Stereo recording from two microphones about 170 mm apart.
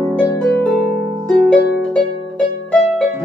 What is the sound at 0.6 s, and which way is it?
Harp, 5° left (ahead or behind).